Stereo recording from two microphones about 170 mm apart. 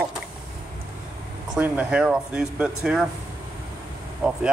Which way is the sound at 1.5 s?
10° right (ahead or behind).